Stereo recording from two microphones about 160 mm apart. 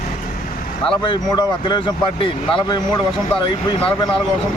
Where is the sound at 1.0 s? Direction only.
30° left (ahead or behind).